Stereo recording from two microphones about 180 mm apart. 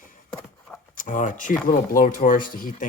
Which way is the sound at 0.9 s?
45° left (ahead or behind).